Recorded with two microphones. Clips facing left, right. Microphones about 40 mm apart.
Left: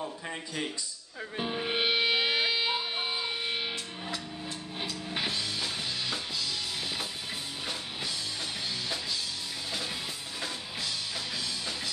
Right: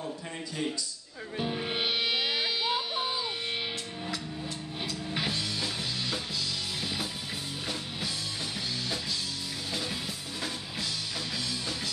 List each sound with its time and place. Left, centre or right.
1.3 s music: centre
4.8 s music: centre